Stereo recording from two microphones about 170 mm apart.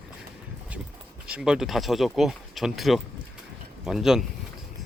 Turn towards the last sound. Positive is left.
turn(degrees=0)  # may be behind; listen again after turning